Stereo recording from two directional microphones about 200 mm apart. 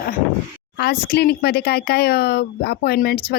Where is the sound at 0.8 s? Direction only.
50° left (ahead or behind).